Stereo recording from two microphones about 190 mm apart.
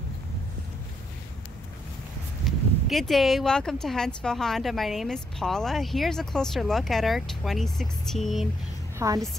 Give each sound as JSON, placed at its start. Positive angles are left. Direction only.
{"t": 2.5, "sound": "a sound", "side_deg": 0}
{"t": 2.9, "sound": "speech", "side_deg": 0}
{"t": 8.9, "sound": "a woman's voice", "side_deg": -15}